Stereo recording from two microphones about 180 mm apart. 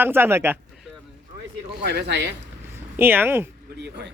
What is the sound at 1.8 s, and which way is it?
Speech, 65° right (ahead or behind).